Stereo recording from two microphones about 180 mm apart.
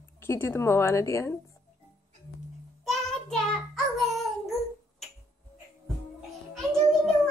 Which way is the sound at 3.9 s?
Centre (ahead or behind).